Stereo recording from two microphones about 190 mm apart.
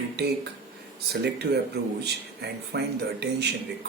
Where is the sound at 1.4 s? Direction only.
65° right (ahead or behind).